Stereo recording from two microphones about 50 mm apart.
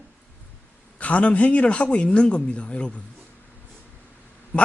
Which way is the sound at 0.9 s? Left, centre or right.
Left.